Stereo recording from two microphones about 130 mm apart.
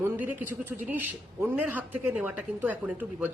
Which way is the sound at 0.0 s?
15° right (ahead or behind).